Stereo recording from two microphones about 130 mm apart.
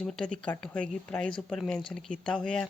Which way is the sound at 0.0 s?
5° left (ahead or behind).